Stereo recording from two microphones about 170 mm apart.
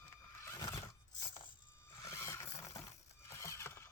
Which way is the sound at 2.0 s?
15° left (ahead or behind).